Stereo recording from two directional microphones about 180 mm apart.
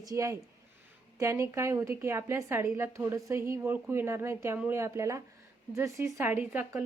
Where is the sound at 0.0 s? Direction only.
20° right (ahead or behind).